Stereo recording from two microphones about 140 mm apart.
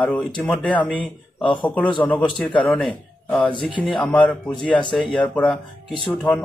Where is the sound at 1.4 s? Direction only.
35° left (ahead or behind).